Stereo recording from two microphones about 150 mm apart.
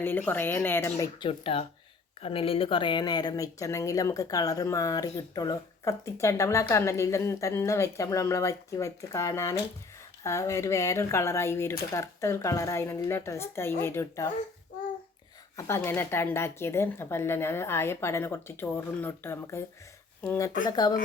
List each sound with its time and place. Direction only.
0.0 s speech: 15° left (ahead or behind)
1.3 s speech: 40° left (ahead or behind); by 14.3 s 15° left (ahead or behind)
15.5 s speech: 15° left (ahead or behind)
20.7 s speech: 25° left (ahead or behind)